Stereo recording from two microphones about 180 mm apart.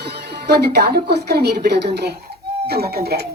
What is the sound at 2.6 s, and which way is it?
Speech, 60° right (ahead or behind).